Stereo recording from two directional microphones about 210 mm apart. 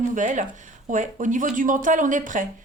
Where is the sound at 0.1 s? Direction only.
35° right (ahead or behind).